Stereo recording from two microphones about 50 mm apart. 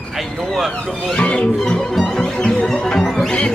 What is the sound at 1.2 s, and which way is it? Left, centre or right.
Music, left.